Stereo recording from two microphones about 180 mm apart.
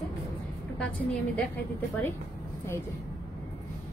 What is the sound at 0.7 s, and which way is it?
Speech, 10° left (ahead or behind).